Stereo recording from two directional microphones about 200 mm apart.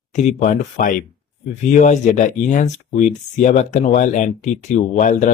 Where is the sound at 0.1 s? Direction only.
35° left (ahead or behind).